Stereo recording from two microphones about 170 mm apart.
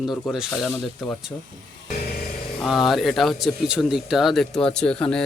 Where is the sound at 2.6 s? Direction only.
Centre (ahead or behind).